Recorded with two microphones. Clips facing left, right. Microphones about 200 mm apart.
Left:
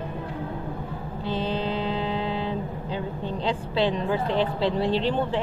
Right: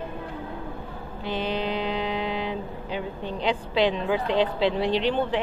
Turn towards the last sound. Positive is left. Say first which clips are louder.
# even
turn(degrees=-75)  # may be behind; listen again after turning